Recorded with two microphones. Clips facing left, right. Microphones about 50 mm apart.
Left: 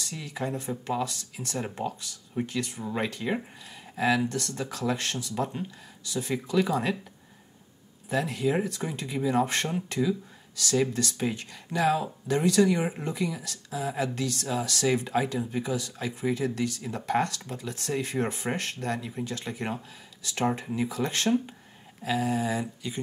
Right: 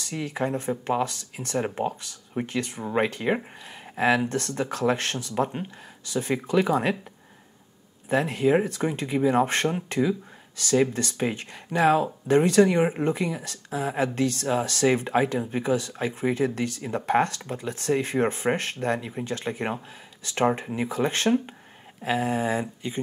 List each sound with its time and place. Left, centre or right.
0.0 s speech: right
8.1 s speech: right